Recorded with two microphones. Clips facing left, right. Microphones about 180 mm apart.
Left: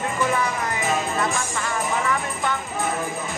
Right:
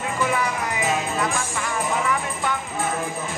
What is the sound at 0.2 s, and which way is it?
Music, 5° right (ahead or behind).